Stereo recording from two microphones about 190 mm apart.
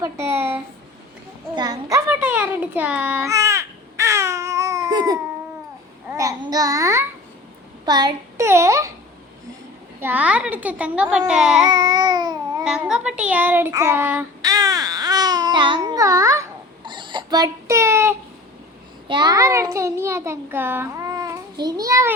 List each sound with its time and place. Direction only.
0.0 s child singing: 15° right (ahead or behind)
1.5 s a child's voice: 20° right (ahead or behind)
2.0 s a sound: 5° right (ahead or behind)
6.1 s child singing: 15° right (ahead or behind)
10.0 s child singing: 10° right (ahead or behind)
11.3 s a sound: 5° right (ahead or behind)
11.6 s babbling: 20° right (ahead or behind)
12.6 s child singing: 5° right (ahead or behind)
14.4 s babbling: 20° right (ahead or behind)
19.0 s a child's voice: 25° right (ahead or behind)